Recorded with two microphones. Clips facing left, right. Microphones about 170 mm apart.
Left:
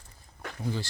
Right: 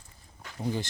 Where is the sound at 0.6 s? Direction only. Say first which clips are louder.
Right 2 dB; 20° right (ahead or behind).